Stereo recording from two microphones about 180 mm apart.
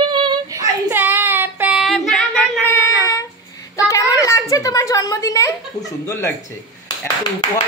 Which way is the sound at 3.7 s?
15° left (ahead or behind).